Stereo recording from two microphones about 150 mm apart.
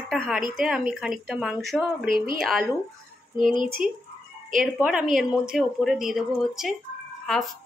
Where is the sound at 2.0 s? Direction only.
75° right (ahead or behind).